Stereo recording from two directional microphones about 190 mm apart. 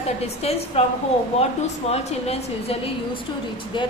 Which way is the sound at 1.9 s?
35° left (ahead or behind).